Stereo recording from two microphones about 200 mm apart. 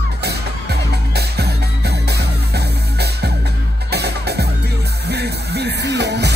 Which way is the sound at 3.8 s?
55° right (ahead or behind).